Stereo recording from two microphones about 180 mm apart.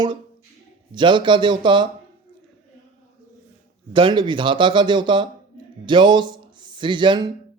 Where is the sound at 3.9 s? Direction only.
25° right (ahead or behind).